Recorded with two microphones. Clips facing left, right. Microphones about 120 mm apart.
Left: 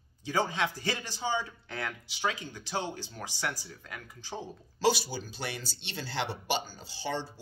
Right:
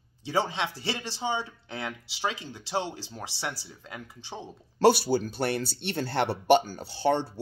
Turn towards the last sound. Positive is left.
turn(degrees=-60)  # may be behind; listen again after turning